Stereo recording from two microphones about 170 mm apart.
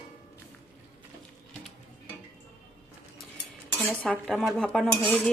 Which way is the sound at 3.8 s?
Centre (ahead or behind).